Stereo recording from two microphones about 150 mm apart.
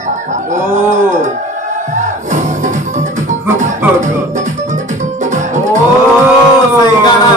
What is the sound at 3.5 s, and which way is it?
Music, 55° right (ahead or behind).